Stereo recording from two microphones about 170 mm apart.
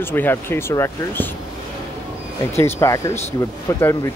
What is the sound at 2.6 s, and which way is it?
Speech, 15° left (ahead or behind).